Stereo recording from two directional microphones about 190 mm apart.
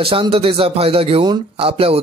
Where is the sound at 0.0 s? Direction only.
25° right (ahead or behind).